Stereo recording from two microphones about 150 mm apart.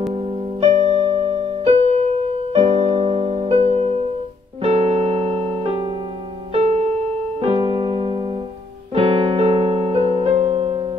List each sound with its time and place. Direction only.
0.1 s music: 45° right (ahead or behind)
4.6 s keyboard: 40° right (ahead or behind)
7.4 s music: 35° right (ahead or behind)